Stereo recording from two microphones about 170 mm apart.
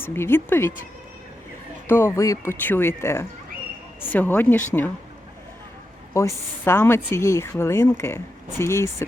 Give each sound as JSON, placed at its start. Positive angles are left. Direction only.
{"t": 0.0, "sound": "speech", "side_deg": 15}
{"t": 1.9, "sound": "speech", "side_deg": 15}
{"t": 6.1, "sound": "speech", "side_deg": 15}